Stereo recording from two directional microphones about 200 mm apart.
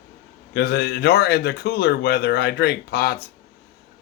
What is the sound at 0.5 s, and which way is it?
Speech, 50° left (ahead or behind).